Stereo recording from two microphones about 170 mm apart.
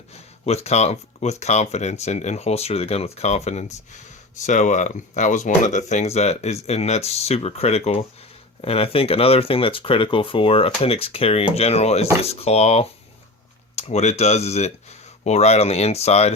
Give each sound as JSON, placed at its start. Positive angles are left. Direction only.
{"t": 0.1, "sound": "speech", "side_deg": 40}